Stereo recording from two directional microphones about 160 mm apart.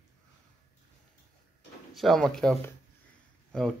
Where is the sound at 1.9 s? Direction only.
Centre (ahead or behind).